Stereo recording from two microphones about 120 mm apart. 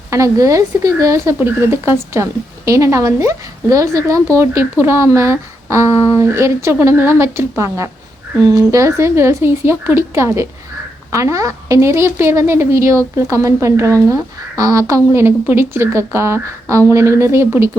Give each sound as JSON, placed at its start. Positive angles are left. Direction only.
{"t": 0.1, "sound": "a woman's voice", "side_deg": -25}
{"t": 5.9, "sound": "speech", "side_deg": 50}
{"t": 6.1, "sound": "a woman's voice", "side_deg": -25}